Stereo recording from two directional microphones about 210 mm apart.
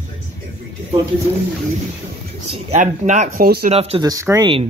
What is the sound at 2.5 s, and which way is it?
Speech, 30° right (ahead or behind).